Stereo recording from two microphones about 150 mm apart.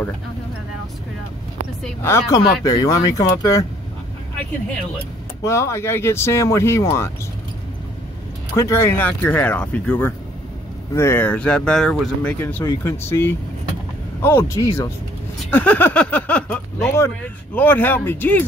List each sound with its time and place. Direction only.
2.0 s speech: 15° left (ahead or behind)
5.4 s speech: 20° left (ahead or behind)
8.5 s speech: 20° left (ahead or behind)